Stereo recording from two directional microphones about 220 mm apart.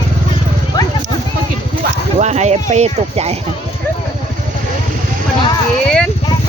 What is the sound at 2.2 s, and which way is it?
Speech, 30° right (ahead or behind).